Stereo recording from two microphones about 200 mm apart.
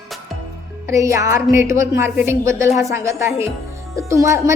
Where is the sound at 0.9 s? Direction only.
15° right (ahead or behind).